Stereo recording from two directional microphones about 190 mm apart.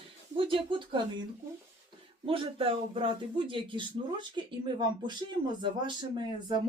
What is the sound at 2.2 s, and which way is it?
A man's voice, 30° right (ahead or behind).